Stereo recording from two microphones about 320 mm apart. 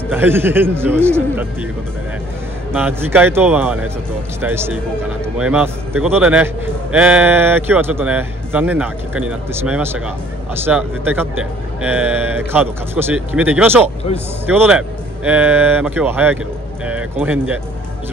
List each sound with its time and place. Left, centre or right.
0.1 s a man's voice: centre
2.7 s a man's voice: centre